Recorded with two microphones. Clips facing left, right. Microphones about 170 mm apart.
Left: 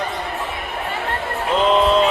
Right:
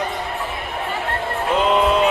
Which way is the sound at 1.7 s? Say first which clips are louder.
Left 2 dB; 10° right (ahead or behind).